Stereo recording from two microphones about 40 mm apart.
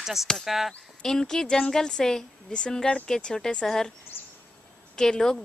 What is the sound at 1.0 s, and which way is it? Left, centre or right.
Speech, centre.